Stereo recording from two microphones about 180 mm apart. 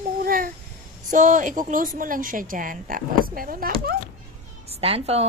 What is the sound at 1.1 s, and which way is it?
A woman's voice, 45° right (ahead or behind).